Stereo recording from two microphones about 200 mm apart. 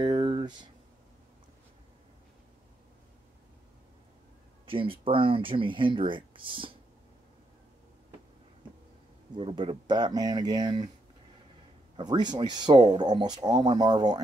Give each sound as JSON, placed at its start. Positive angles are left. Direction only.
{"t": 0.0, "sound": "a sound", "side_deg": -25}
{"t": 4.6, "sound": "speech", "side_deg": -25}
{"t": 9.3, "sound": "speech", "side_deg": -25}
{"t": 12.0, "sound": "speech", "side_deg": -20}